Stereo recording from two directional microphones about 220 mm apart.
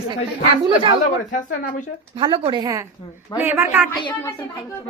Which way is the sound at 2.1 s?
25° right (ahead or behind).